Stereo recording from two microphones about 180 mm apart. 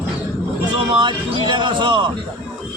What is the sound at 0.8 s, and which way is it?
A man's voice, 30° right (ahead or behind).